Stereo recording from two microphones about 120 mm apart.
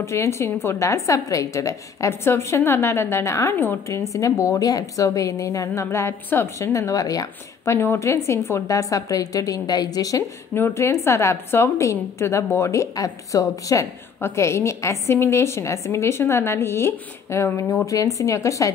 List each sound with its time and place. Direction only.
0.0 s a woman's voice: 25° left (ahead or behind)